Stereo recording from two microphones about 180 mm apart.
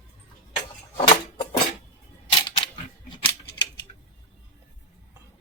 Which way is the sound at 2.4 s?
25° left (ahead or behind).